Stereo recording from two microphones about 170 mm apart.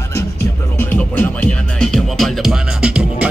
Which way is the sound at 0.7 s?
10° left (ahead or behind).